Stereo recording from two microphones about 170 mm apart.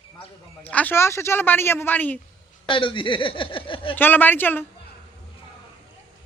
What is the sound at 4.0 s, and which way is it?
Speech, 10° left (ahead or behind).